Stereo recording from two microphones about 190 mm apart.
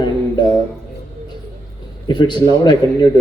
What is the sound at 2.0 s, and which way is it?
A man's voice, 25° left (ahead or behind).